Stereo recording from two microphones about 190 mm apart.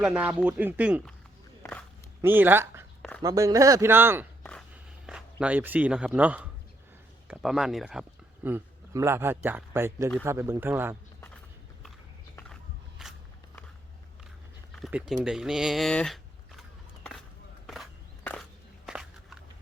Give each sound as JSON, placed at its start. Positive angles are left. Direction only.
{"t": 0.0, "sound": "a man's voice", "side_deg": -10}
{"t": 2.2, "sound": "a man's voice", "side_deg": -10}
{"t": 4.7, "sound": "a sound", "side_deg": -5}
{"t": 7.3, "sound": "speech", "side_deg": 0}
{"t": 8.4, "sound": "a man's voice", "side_deg": -15}
{"t": 13.0, "sound": "a sound", "side_deg": 0}
{"t": 14.8, "sound": "speech", "side_deg": -5}
{"t": 17.7, "sound": "walk", "side_deg": 5}